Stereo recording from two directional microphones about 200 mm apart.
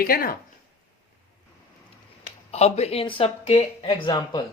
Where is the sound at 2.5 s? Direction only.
30° left (ahead or behind).